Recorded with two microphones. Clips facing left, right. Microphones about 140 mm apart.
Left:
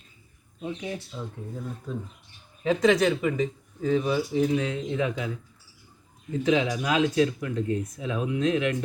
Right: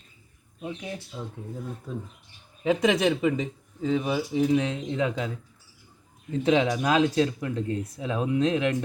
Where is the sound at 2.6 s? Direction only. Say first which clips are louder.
Left 1 dB; 15° right (ahead or behind).